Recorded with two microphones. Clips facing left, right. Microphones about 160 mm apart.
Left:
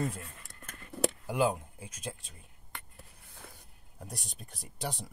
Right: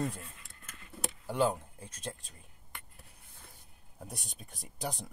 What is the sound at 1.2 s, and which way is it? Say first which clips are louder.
Speech: right 2 dB; 10° left (ahead or behind).